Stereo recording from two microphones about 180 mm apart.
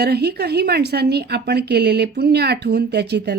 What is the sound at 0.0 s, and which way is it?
A woman's voice, 65° right (ahead or behind).